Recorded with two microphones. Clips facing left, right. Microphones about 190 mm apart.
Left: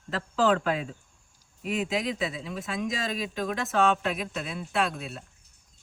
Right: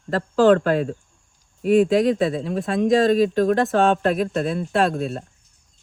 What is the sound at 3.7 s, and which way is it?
Speech, 35° right (ahead or behind).